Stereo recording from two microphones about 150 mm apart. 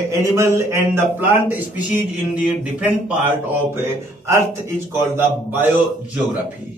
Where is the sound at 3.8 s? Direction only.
15° right (ahead or behind).